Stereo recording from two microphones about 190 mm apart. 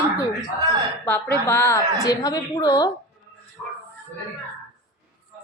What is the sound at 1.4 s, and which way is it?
A woman's voice, 15° left (ahead or behind).